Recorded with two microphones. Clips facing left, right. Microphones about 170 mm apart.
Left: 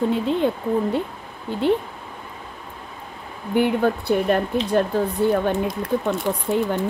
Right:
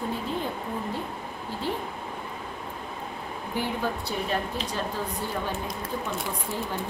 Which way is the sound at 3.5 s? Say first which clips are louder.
Left 11 dB; 60° left (ahead or behind).